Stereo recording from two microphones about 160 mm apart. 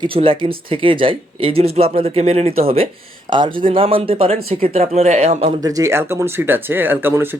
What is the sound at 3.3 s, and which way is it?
Speech, 25° right (ahead or behind).